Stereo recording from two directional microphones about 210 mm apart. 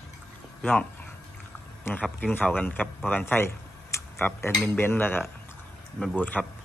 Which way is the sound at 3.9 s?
15° left (ahead or behind).